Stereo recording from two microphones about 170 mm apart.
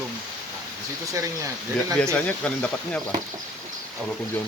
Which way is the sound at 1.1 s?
20° right (ahead or behind).